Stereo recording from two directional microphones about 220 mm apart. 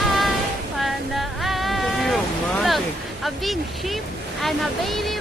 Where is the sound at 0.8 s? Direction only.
Centre (ahead or behind).